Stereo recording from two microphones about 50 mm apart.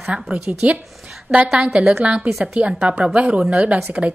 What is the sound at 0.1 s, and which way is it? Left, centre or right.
Speech, right.